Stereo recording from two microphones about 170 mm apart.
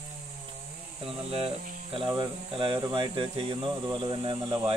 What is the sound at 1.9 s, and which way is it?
Speech, 30° right (ahead or behind).